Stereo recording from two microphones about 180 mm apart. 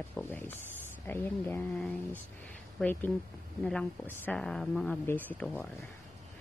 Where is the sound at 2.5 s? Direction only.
10° left (ahead or behind).